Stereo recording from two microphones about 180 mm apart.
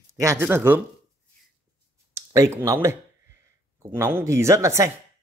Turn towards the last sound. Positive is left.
turn(degrees=-15)  # may be behind; listen again after turning